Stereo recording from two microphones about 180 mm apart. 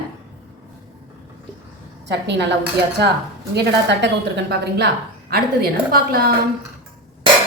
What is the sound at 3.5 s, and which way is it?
A woman's voice, 70° right (ahead or behind).